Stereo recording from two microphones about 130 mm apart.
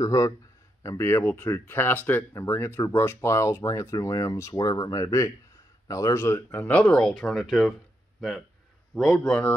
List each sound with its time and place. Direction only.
0.0 s a man's voice: 25° left (ahead or behind); by 9.6 s 10° left (ahead or behind)